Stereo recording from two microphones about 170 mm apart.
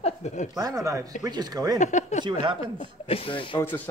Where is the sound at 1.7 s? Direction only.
45° left (ahead or behind).